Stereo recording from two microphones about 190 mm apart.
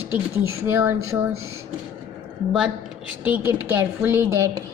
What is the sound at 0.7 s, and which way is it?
Speech, 15° right (ahead or behind).